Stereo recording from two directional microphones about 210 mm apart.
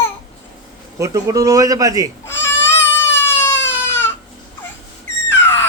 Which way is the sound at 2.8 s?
10° left (ahead or behind).